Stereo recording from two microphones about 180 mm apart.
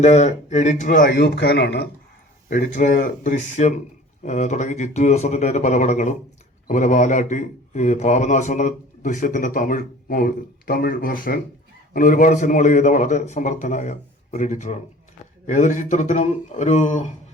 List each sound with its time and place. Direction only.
0.0 s speech: 40° left (ahead or behind); by 1.9 s 65° left (ahead or behind)
2.5 s speech: 50° left (ahead or behind)